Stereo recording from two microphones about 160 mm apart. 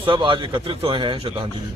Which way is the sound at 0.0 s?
30° right (ahead or behind).